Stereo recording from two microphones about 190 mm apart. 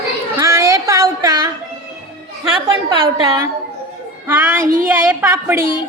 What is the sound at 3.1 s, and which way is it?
Speech, 25° right (ahead or behind).